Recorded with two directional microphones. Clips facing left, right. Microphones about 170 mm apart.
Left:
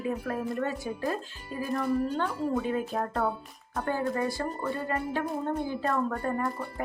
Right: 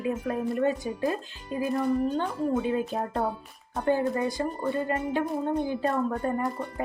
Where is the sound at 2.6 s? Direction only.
20° right (ahead or behind).